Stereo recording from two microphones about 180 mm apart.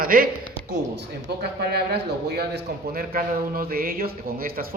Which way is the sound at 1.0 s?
65° right (ahead or behind).